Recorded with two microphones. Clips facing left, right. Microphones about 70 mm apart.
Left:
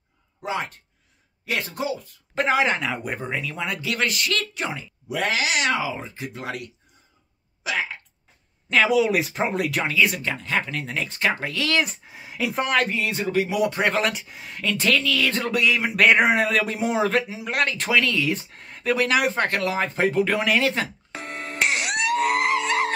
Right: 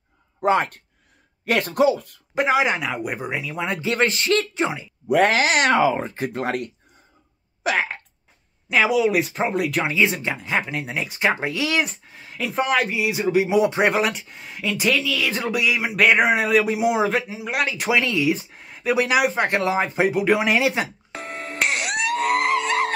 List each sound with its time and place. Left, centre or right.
0.4 s speech: right
1.4 s speech: right
2.3 s a man's voice: centre
3.6 s speech: right
5.0 s speech: right
7.6 s a sound: right
8.6 s speech: centre
9.8 s speech: right
12.1 s a man's voice: centre
14.0 s speech: centre
17.9 s speech: centre
18.3 s a man's voice: centre
19.5 s a man's voice: centre
21.1 s a sound: centre